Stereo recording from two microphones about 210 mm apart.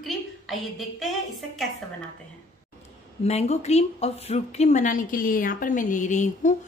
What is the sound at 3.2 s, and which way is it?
Speech, 30° left (ahead or behind).